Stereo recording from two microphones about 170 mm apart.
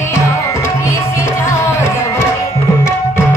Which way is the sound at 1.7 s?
15° left (ahead or behind).